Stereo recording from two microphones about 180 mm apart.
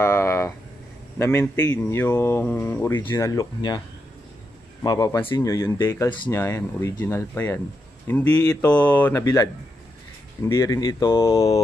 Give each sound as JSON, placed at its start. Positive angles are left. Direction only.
{"t": 0.0, "sound": "a sound", "side_deg": 15}
{"t": 1.1, "sound": "speech", "side_deg": 15}
{"t": 4.8, "sound": "speech", "side_deg": 20}
{"t": 6.0, "sound": "speech", "side_deg": 25}
{"t": 6.3, "sound": "speech", "side_deg": 15}
{"t": 8.6, "sound": "speech", "side_deg": 10}